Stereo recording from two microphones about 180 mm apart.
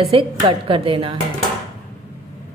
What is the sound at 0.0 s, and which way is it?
A woman's voice, 30° right (ahead or behind).